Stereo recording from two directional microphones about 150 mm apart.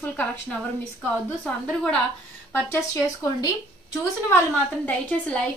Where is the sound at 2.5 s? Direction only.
20° left (ahead or behind).